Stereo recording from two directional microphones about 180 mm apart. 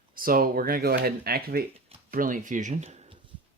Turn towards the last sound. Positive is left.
turn(degrees=-35)  # may be behind; listen again after turning